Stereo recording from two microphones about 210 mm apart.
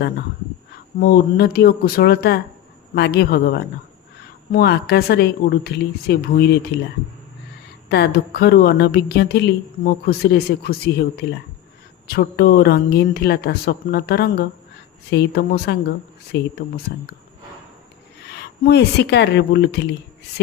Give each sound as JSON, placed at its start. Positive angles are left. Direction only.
{"t": 0.9, "sound": "a woman's voice", "side_deg": 45}
{"t": 7.9, "sound": "a woman's voice", "side_deg": 50}
{"t": 18.6, "sound": "a woman's voice", "side_deg": 50}